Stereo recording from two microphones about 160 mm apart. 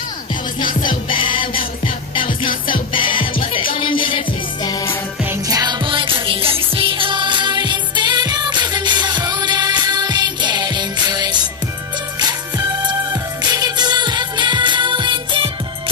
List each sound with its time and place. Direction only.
0.8 s music: 30° left (ahead or behind)
5.5 s music: 25° right (ahead or behind)